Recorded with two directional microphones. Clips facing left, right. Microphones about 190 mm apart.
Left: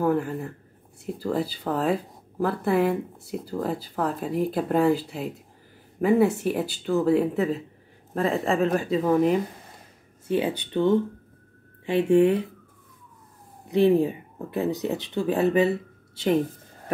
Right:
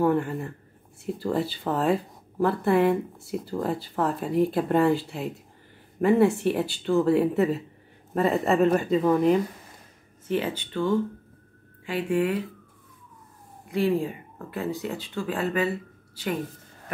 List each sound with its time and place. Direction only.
0.0 s speech: centre (ahead or behind)
10.3 s speech: 15° left (ahead or behind)
13.7 s speech: 20° left (ahead or behind)